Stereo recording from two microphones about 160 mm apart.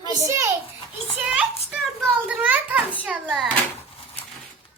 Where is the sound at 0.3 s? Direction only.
20° right (ahead or behind).